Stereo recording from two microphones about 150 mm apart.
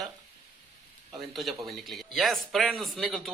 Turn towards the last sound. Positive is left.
turn(degrees=0)  # may be behind; listen again after turning